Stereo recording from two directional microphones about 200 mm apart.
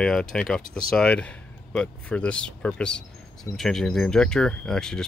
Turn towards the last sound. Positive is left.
turn(degrees=5)  # may be behind; listen again after turning